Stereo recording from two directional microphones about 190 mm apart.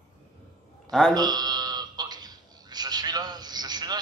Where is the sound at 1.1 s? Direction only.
20° right (ahead or behind).